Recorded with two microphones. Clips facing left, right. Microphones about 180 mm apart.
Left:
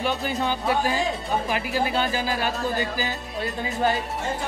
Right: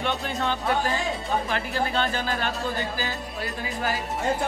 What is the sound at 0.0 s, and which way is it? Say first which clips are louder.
Speech: left 2 dB; 5° left (ahead or behind).